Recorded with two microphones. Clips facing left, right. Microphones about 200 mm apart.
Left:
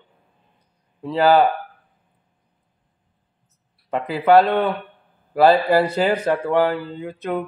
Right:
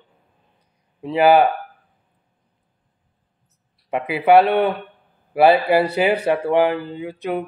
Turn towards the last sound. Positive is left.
turn(degrees=-10)  # may be behind; listen again after turning